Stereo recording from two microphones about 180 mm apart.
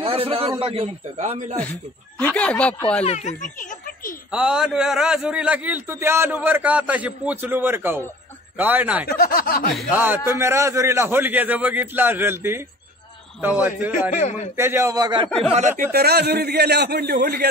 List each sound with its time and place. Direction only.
0.0 s a man's voice: 30° right (ahead or behind)
2.1 s speech: 5° left (ahead or behind)
3.0 s speech: 40° left (ahead or behind)
4.3 s a man's voice: 5° right (ahead or behind)
9.0 s speech: 60° left (ahead or behind)
9.9 s a man's voice: 10° right (ahead or behind)
14.1 s a man's voice: 40° left (ahead or behind)
14.6 s a man's voice: 15° right (ahead or behind)
15.2 s speech: centre (ahead or behind)
15.9 s a man's voice: 60° right (ahead or behind)